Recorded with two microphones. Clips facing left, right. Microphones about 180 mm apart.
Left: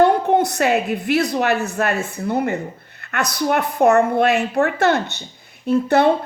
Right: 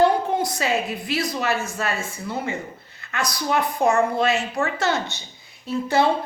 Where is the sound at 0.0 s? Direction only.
65° left (ahead or behind).